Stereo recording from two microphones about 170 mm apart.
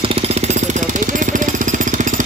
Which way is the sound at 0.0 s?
35° right (ahead or behind).